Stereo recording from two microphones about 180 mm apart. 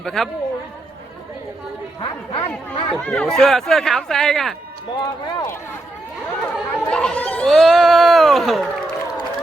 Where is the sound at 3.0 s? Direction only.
5° left (ahead or behind).